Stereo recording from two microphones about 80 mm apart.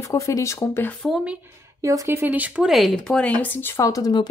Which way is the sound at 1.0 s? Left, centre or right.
Centre.